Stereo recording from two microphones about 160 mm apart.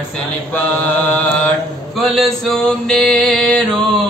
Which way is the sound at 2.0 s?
Centre (ahead or behind).